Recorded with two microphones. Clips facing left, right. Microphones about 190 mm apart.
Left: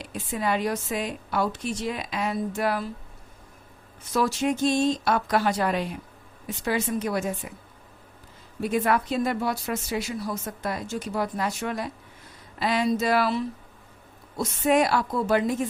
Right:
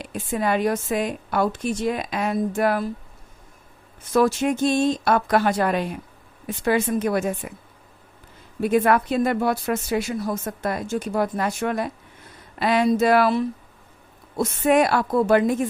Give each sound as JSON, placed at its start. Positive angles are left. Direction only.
{"t": 0.0, "sound": "a woman's voice", "side_deg": -50}
{"t": 4.1, "sound": "speech", "side_deg": -55}
{"t": 8.6, "sound": "speech", "side_deg": -55}